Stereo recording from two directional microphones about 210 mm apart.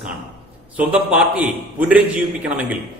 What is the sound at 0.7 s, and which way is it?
A man's voice, 5° right (ahead or behind).